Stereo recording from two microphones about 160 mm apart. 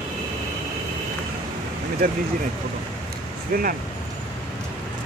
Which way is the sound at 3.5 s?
60° right (ahead or behind).